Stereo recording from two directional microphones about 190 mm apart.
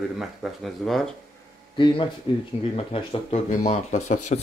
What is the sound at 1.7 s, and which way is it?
Speech, 25° left (ahead or behind).